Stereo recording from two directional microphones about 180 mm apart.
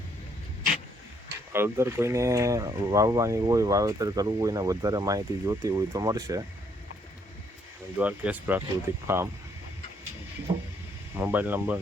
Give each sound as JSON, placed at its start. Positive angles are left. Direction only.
{"t": 1.5, "sound": "speech", "side_deg": -15}
{"t": 7.9, "sound": "speech", "side_deg": -10}
{"t": 10.5, "sound": "a sound", "side_deg": -25}
{"t": 11.1, "sound": "speech", "side_deg": -10}